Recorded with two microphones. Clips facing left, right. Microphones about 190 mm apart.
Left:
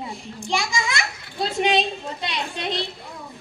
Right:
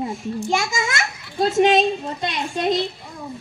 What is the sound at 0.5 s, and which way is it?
A child's voice, 45° right (ahead or behind).